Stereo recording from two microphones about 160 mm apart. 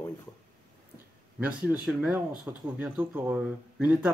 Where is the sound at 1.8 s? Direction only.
5° right (ahead or behind).